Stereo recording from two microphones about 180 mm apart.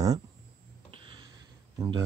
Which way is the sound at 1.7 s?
20° right (ahead or behind).